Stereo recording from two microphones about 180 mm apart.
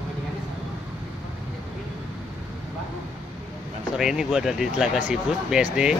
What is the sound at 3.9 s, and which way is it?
Speech, 5° right (ahead or behind).